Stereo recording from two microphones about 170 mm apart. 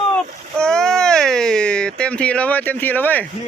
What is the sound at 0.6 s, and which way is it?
Speech, 5° left (ahead or behind).